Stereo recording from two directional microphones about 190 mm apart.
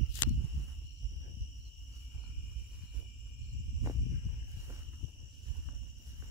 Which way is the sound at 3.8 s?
15° right (ahead or behind).